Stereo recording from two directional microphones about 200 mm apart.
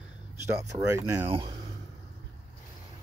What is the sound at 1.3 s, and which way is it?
Speech, 25° right (ahead or behind).